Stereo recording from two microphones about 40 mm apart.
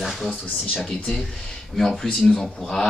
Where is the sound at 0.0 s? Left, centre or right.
Centre.